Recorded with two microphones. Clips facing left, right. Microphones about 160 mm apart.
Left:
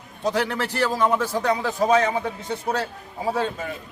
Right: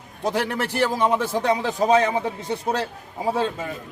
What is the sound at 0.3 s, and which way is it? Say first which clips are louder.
A man's voice: even; 20° right (ahead or behind).